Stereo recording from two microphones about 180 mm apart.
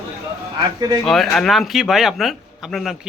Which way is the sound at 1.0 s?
Centre (ahead or behind).